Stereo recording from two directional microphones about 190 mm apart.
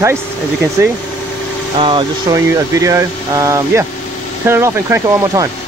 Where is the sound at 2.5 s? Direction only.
15° right (ahead or behind).